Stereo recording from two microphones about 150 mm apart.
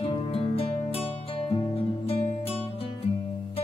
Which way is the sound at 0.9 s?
40° left (ahead or behind).